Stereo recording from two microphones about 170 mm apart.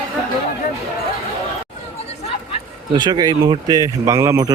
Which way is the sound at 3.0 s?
25° right (ahead or behind).